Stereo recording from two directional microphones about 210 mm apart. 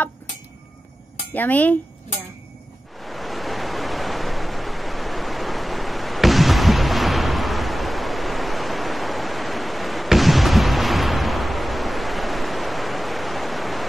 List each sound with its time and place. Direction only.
1.3 s speech: 10° left (ahead or behind)
3.0 s waves: centre (ahead or behind)